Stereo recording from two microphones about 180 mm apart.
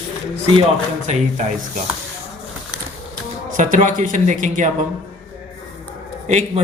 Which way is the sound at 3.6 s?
45° right (ahead or behind).